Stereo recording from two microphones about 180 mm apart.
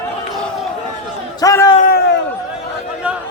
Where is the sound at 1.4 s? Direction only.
20° left (ahead or behind).